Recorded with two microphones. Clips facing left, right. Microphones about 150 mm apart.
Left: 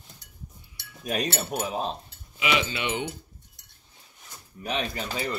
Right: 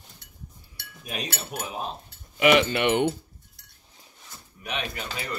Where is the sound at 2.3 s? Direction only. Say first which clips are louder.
Right 7 dB; 55° right (ahead or behind).